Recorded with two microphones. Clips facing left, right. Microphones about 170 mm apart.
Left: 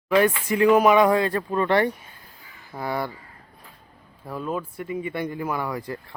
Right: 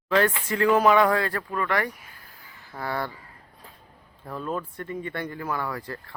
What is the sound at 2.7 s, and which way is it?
Speech, 15° left (ahead or behind).